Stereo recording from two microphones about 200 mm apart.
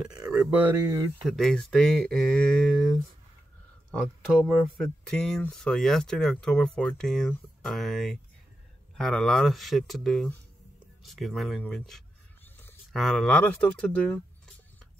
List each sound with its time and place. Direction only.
0.0 s speech: 5° right (ahead or behind)
1.2 s speech: centre (ahead or behind)